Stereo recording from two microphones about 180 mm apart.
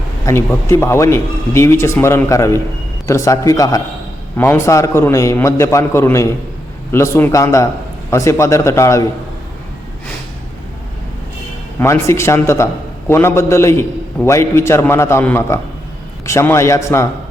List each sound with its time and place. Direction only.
0.3 s speech: 15° left (ahead or behind)
11.8 s speech: 15° left (ahead or behind)